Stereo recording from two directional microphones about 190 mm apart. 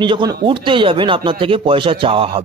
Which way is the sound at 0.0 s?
25° right (ahead or behind).